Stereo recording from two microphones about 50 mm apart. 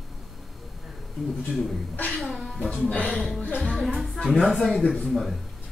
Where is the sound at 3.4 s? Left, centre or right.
Left.